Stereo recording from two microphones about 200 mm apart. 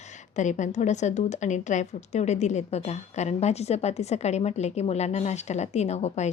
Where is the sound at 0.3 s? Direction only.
35° left (ahead or behind).